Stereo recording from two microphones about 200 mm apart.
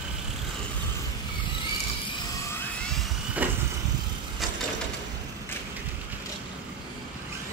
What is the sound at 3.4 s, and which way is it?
Vehicle, 10° right (ahead or behind).